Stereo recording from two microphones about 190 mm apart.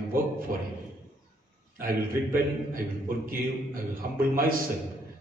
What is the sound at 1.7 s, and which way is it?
A man's voice, 50° right (ahead or behind).